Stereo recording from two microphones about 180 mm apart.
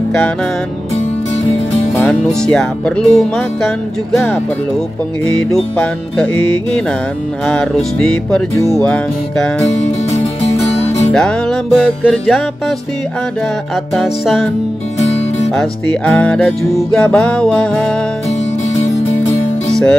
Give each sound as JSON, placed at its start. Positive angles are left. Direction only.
{"t": 2.0, "sound": "music", "side_deg": 5}
{"t": 5.5, "sound": "music", "side_deg": 5}
{"t": 10.1, "sound": "music", "side_deg": 35}
{"t": 11.1, "sound": "music", "side_deg": 5}
{"t": 13.9, "sound": "music", "side_deg": 0}
{"t": 15.5, "sound": "music", "side_deg": 5}